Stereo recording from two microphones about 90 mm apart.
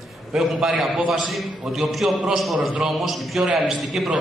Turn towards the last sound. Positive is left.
turn(degrees=-5)  # may be behind; listen again after turning